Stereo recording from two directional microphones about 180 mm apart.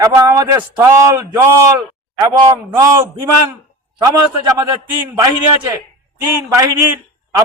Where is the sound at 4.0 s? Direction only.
20° right (ahead or behind).